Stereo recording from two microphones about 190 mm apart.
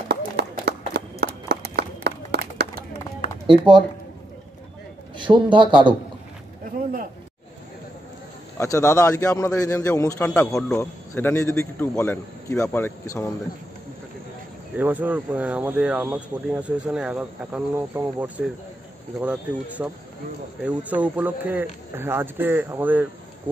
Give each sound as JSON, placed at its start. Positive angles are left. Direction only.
{"t": 0.1, "sound": "a sound", "side_deg": -60}
{"t": 3.4, "sound": "speech", "side_deg": -25}
{"t": 5.1, "sound": "a man's voice", "side_deg": -25}
{"t": 8.5, "sound": "a man's voice", "side_deg": 15}
{"t": 14.8, "sound": "speech", "side_deg": -10}